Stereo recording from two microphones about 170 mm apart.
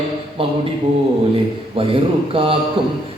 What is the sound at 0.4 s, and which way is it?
Speech, 35° right (ahead or behind).